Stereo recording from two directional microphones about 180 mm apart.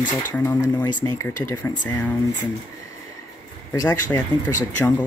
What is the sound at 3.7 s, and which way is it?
Speech, 20° left (ahead or behind).